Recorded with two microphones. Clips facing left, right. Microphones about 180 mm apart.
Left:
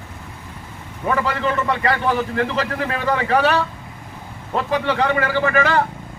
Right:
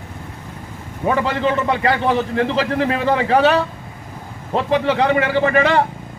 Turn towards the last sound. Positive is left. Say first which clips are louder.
# right 3 dB
turn(degrees=-25)  # may be behind; listen again after turning